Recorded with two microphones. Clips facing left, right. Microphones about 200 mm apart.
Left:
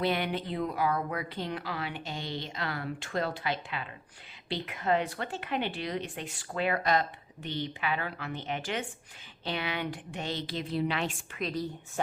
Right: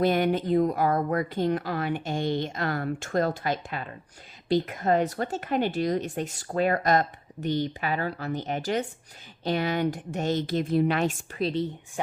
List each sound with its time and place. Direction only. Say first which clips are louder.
0.0 s speech: right 7 dB; 45° right (ahead or behind)
12.0 s speech: right 1 dB; 15° right (ahead or behind)